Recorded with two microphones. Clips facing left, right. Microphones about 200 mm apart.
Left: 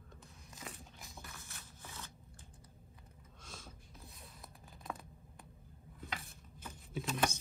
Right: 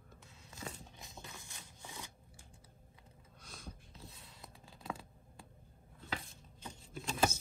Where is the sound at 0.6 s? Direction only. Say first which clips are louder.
Right 3 dB; 20° right (ahead or behind).